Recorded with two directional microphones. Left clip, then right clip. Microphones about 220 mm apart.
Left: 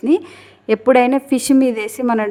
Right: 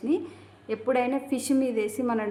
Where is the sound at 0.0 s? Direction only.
45° left (ahead or behind).